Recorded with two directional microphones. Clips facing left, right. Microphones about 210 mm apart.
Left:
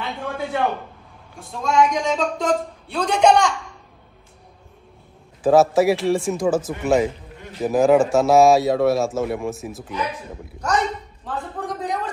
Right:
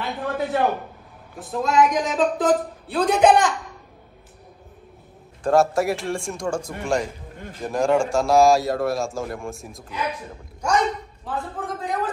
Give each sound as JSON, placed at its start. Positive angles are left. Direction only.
{"t": 0.0, "sound": "a man's voice", "side_deg": 0}
{"t": 5.4, "sound": "speech", "side_deg": 0}
{"t": 10.6, "sound": "speech", "side_deg": -10}